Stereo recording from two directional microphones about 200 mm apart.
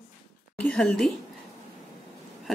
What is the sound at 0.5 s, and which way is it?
Speech, 5° left (ahead or behind).